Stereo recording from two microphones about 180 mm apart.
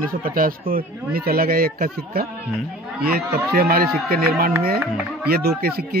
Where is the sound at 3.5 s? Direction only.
55° right (ahead or behind).